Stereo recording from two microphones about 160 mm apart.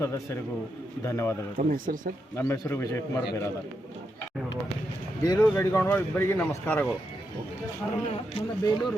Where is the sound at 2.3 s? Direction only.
15° left (ahead or behind).